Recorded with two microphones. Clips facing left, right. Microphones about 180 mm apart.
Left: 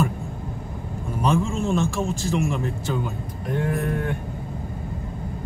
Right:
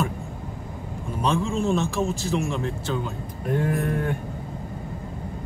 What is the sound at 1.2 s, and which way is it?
Speech, 5° left (ahead or behind).